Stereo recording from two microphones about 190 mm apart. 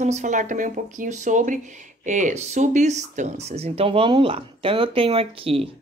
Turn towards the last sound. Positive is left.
turn(degrees=-30)  # may be behind; listen again after turning